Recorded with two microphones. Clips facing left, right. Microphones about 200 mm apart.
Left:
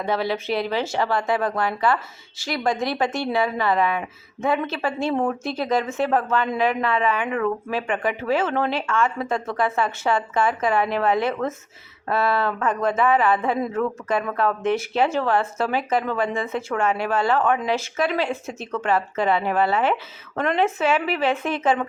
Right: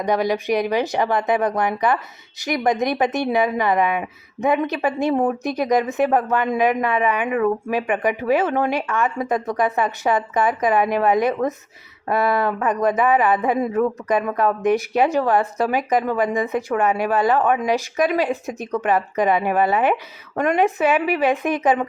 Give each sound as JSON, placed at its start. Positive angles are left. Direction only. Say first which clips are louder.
{"t": 0.0, "sound": "speech", "louder": "right 4 dB", "side_deg": -15}